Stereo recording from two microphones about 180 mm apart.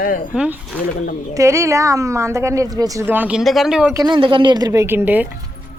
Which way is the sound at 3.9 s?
20° right (ahead or behind).